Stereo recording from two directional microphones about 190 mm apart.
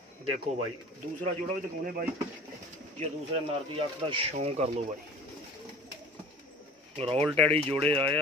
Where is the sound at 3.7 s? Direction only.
25° right (ahead or behind).